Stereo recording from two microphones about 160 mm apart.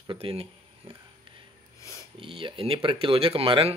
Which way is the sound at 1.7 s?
20° left (ahead or behind).